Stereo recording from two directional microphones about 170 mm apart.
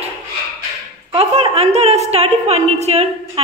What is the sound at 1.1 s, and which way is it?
A woman's voice, 35° right (ahead or behind).